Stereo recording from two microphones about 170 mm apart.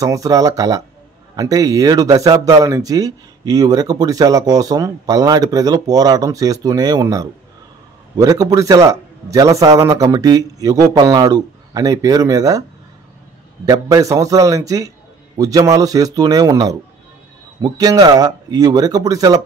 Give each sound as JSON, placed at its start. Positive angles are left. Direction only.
{"t": 0.0, "sound": "speech", "side_deg": -20}
{"t": 13.7, "sound": "speech", "side_deg": -20}